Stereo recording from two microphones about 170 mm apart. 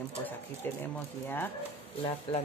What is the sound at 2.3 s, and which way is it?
Speech, 35° left (ahead or behind).